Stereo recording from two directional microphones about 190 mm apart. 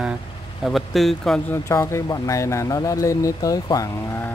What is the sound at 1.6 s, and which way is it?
Speech, 15° left (ahead or behind).